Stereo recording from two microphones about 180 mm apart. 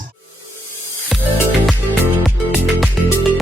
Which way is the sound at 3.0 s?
Centre (ahead or behind).